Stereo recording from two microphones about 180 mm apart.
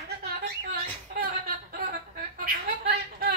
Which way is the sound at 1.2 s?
55° right (ahead or behind).